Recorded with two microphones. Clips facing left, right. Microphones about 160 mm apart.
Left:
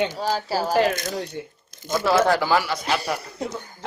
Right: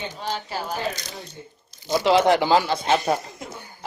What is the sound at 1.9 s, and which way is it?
Speech, 20° right (ahead or behind).